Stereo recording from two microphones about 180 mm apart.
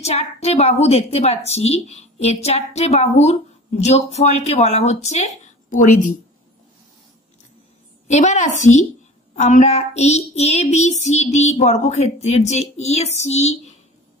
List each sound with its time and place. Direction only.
0.0 s child singing: 35° left (ahead or behind)
8.1 s child singing: 40° left (ahead or behind)